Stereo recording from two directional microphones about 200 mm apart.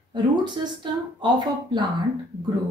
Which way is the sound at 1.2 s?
20° right (ahead or behind).